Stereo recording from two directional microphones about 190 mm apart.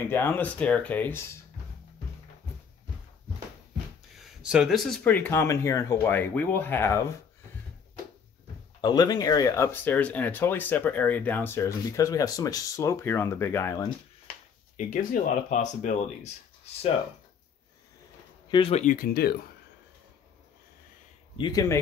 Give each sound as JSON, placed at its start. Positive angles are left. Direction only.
{"t": 0.0, "sound": "speech", "side_deg": 10}
{"t": 4.2, "sound": "speech", "side_deg": -5}
{"t": 8.8, "sound": "speech", "side_deg": 20}
{"t": 15.5, "sound": "speech", "side_deg": 40}
{"t": 18.5, "sound": "speech", "side_deg": 30}
{"t": 21.4, "sound": "speech", "side_deg": 20}